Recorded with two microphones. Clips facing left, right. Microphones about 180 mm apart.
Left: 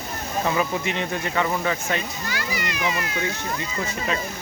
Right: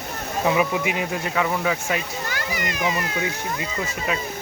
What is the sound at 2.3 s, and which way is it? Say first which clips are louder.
Children playing: even; 50° right (ahead or behind).